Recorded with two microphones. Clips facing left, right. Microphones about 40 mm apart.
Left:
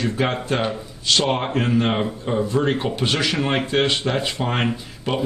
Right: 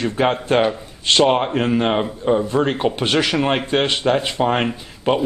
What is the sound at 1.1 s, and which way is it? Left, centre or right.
Speech, right.